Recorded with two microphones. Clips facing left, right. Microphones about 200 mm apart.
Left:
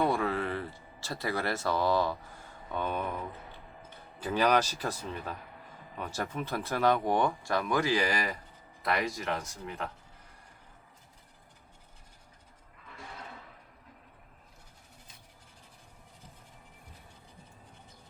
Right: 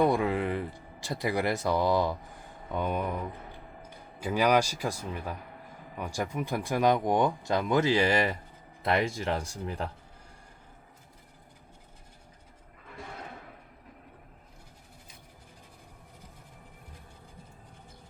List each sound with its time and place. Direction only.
0.0 s speech: 15° right (ahead or behind); by 9.9 s 30° right (ahead or behind)